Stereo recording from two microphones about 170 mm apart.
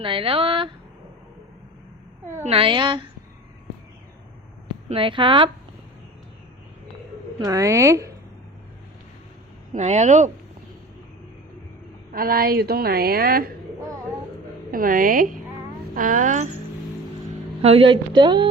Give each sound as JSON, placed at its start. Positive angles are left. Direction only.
{"t": 0.0, "sound": "speech", "side_deg": -30}
{"t": 2.4, "sound": "speech", "side_deg": -35}
{"t": 4.9, "sound": "speech", "side_deg": -30}
{"t": 7.4, "sound": "speech", "side_deg": -20}
{"t": 9.7, "sound": "speech", "side_deg": -40}
{"t": 12.1, "sound": "a woman's voice", "side_deg": -60}
{"t": 14.7, "sound": "a woman's voice", "side_deg": -55}
{"t": 17.6, "sound": "a woman's voice", "side_deg": -35}